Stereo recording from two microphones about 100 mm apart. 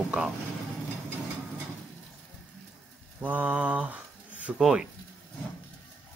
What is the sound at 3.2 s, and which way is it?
Speech, 15° right (ahead or behind).